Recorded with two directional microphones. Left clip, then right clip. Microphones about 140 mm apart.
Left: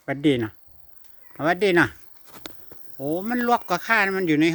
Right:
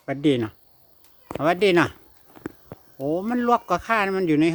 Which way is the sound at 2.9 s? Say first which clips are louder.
Right 1 dB; 5° right (ahead or behind).